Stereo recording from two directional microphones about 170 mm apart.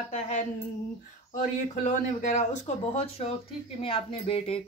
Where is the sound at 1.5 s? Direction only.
45° left (ahead or behind).